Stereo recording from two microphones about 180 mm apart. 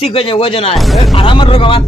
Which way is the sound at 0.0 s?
30° left (ahead or behind).